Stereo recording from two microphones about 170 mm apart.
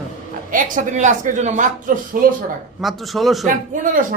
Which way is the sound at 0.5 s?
50° right (ahead or behind).